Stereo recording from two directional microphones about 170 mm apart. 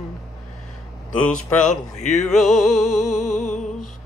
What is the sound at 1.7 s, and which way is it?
Speech, 45° left (ahead or behind).